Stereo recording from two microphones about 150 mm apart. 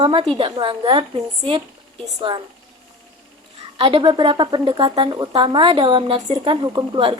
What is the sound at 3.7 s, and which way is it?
Speech, 35° right (ahead or behind).